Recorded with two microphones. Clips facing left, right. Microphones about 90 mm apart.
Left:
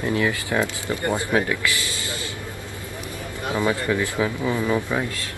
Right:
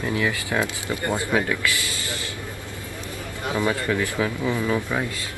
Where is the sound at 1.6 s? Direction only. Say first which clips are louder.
Even; 20° left (ahead or behind).